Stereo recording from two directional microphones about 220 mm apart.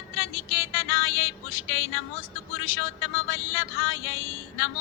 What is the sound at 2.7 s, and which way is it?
Speech, 65° left (ahead or behind).